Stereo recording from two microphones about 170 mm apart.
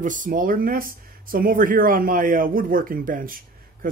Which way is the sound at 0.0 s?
50° right (ahead or behind).